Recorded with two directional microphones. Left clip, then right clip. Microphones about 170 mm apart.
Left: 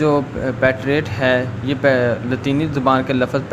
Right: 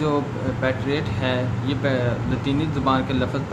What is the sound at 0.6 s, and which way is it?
Speech, 40° left (ahead or behind).